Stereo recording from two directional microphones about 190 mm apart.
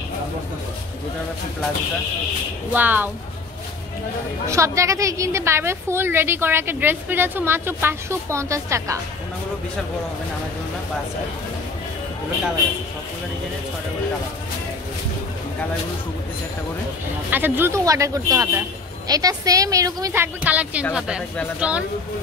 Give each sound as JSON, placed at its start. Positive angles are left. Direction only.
{"t": 2.7, "sound": "a woman's voice", "side_deg": -10}
{"t": 4.5, "sound": "a woman's voice", "side_deg": -15}
{"t": 17.3, "sound": "a woman's voice", "side_deg": -10}